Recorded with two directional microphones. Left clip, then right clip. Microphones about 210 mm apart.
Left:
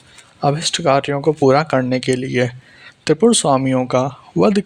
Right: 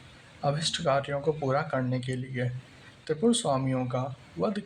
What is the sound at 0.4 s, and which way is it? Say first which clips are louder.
Speech: left 11 dB; 40° left (ahead or behind).